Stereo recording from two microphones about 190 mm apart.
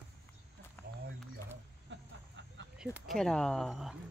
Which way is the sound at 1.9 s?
75° right (ahead or behind).